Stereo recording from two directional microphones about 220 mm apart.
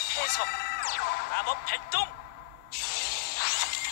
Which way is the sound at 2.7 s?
45° left (ahead or behind).